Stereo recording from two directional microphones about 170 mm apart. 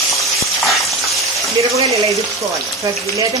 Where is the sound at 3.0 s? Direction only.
20° right (ahead or behind).